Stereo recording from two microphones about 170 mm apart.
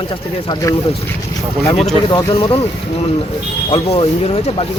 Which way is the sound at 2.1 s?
30° left (ahead or behind).